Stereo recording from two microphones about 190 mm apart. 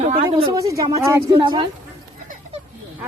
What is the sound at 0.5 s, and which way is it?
Speech, 15° right (ahead or behind).